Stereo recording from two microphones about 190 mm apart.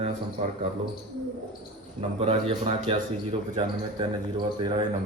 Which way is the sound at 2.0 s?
30° right (ahead or behind).